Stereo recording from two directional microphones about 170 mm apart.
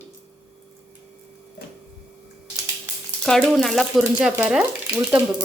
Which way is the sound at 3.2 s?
5° left (ahead or behind).